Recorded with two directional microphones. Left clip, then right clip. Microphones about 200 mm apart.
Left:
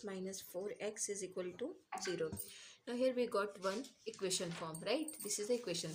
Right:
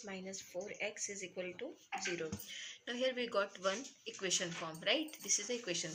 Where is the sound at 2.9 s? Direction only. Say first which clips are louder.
Left 1 dB; 50° left (ahead or behind).